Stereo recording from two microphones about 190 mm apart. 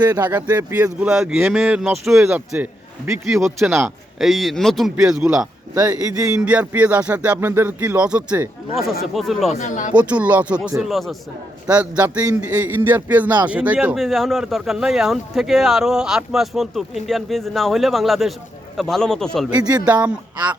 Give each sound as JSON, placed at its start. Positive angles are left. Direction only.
{"t": 0.0, "sound": "speech", "side_deg": -20}
{"t": 0.3, "sound": "a man's voice", "side_deg": -10}
{"t": 5.7, "sound": "speech", "side_deg": -20}
{"t": 6.4, "sound": "music", "side_deg": -5}
{"t": 9.1, "sound": "a man's voice", "side_deg": 0}
{"t": 9.5, "sound": "speech", "side_deg": 40}
{"t": 9.9, "sound": "music", "side_deg": -5}
{"t": 10.8, "sound": "a man's voice", "side_deg": 0}
{"t": 11.7, "sound": "music", "side_deg": -10}
{"t": 13.5, "sound": "a man's voice", "side_deg": -5}
{"t": 19.8, "sound": "music", "side_deg": -5}